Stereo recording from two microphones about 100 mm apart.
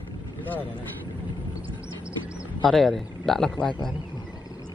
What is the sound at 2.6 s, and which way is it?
A man's voice, 5° left (ahead or behind).